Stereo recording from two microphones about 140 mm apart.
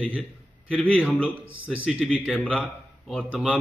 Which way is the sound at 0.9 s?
5° right (ahead or behind).